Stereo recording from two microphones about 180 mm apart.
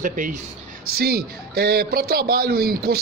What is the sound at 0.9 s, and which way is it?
Speech, 60° right (ahead or behind).